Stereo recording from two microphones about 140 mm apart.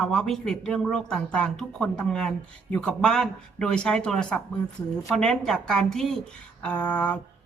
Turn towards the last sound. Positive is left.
turn(degrees=10)  # may be behind; listen again after turning